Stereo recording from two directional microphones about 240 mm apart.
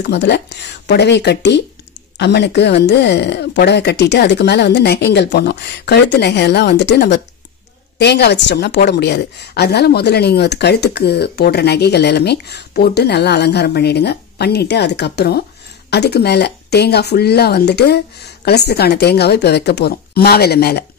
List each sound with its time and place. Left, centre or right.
0.0 s a woman's voice: left